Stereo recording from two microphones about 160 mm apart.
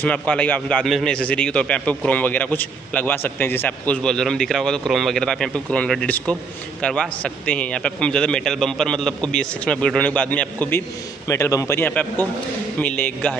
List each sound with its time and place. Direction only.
0.0 s a man's voice: 10° left (ahead or behind)